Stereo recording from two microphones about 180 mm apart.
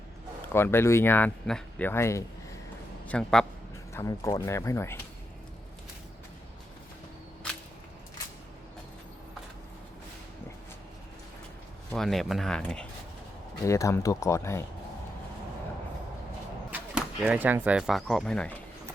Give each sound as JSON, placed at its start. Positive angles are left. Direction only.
{"t": 0.5, "sound": "speech", "side_deg": 15}
{"t": 3.1, "sound": "speech", "side_deg": 5}
{"t": 3.9, "sound": "speech", "side_deg": 20}
{"t": 11.9, "sound": "speech", "side_deg": 0}
{"t": 13.7, "sound": "speech", "side_deg": 15}
{"t": 16.7, "sound": "speech", "side_deg": -10}